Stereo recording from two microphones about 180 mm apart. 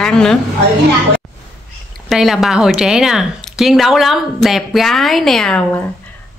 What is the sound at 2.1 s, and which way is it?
A woman's voice, centre (ahead or behind).